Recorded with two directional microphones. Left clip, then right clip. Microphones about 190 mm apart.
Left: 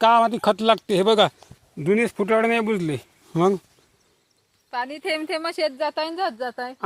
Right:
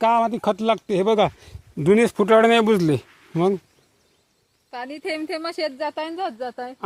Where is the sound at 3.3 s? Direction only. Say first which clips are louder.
Left 1 dB; centre (ahead or behind).